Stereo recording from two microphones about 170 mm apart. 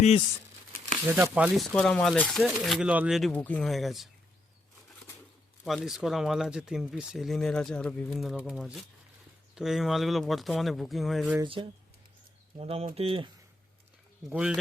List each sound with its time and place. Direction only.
1.0 s speech: 15° right (ahead or behind)
1.5 s speech: 5° left (ahead or behind)
5.6 s speech: centre (ahead or behind)
12.5 s speech: 35° right (ahead or behind)
14.3 s speech: 5° right (ahead or behind)